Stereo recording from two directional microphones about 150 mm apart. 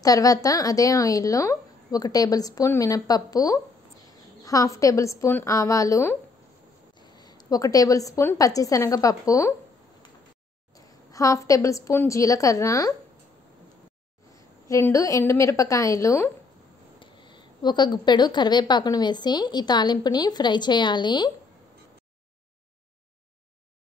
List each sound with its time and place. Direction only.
0.0 s a woman's voice: 25° left (ahead or behind)
10.7 s a woman's voice: 20° left (ahead or behind)
14.3 s a woman's voice: 20° left (ahead or behind)
17.0 s a woman's voice: 30° left (ahead or behind)